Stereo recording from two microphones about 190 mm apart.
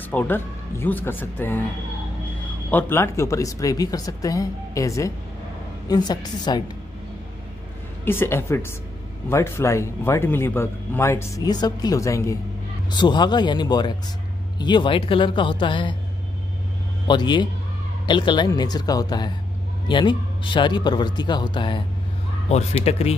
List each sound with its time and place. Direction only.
0.1 s speech: 10° left (ahead or behind)
2.7 s a man's voice: 15° left (ahead or behind)
8.0 s a man's voice: 10° left (ahead or behind)
17.1 s a man's voice: 25° left (ahead or behind)
22.8 s speech: 35° left (ahead or behind)